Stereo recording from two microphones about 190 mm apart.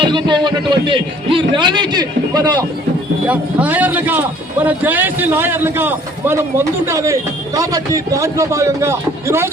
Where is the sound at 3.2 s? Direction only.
10° right (ahead or behind).